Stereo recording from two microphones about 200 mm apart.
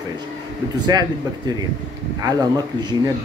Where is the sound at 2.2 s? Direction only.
20° right (ahead or behind).